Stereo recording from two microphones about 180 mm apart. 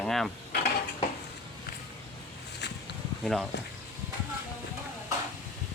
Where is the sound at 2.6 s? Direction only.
70° left (ahead or behind).